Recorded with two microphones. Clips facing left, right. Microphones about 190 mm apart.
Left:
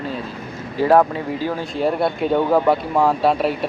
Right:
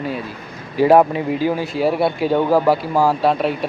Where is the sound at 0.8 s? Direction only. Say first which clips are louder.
Right 3 dB; 15° right (ahead or behind).